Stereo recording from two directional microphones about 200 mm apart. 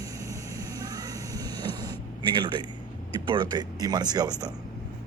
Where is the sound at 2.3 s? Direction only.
25° right (ahead or behind).